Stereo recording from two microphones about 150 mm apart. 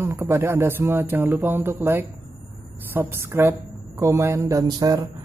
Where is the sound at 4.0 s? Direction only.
20° right (ahead or behind).